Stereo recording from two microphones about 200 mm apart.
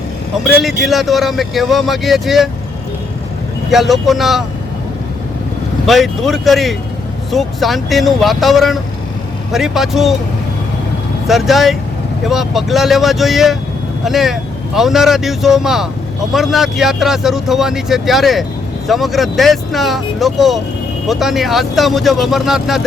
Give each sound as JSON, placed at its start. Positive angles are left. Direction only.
{"t": 0.4, "sound": "speech", "side_deg": 0}
{"t": 3.7, "sound": "speech", "side_deg": 0}
{"t": 5.8, "sound": "speech", "side_deg": 0}
{"t": 11.3, "sound": "speech", "side_deg": 0}